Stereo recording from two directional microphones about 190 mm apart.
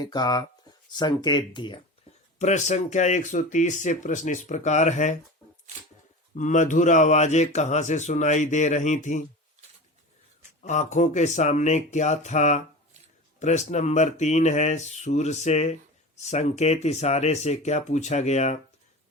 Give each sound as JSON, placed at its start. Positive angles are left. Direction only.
{"t": 0.0, "sound": "speech", "side_deg": 20}
{"t": 2.4, "sound": "speech", "side_deg": 40}
{"t": 6.3, "sound": "speech", "side_deg": 40}
{"t": 10.6, "sound": "speech", "side_deg": 40}